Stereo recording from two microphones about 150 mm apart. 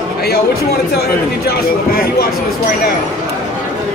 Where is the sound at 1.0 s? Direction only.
90° left.